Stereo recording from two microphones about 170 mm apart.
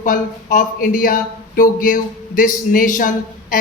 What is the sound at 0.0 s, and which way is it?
A man's voice, 50° left (ahead or behind).